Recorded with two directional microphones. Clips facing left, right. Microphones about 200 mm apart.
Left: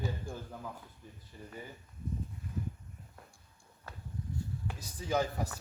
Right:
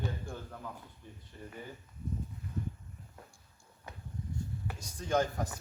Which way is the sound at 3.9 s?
20° right (ahead or behind).